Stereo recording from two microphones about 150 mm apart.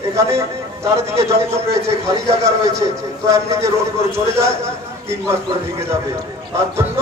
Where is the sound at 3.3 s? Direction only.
20° right (ahead or behind).